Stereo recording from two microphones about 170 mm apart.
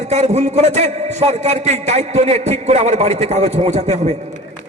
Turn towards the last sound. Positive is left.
turn(degrees=-40)  # may be behind; listen again after turning